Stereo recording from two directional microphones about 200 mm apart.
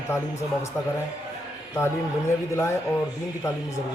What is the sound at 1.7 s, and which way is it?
Speech, 15° left (ahead or behind).